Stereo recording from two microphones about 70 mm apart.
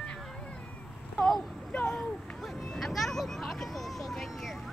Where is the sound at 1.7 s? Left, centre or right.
Centre.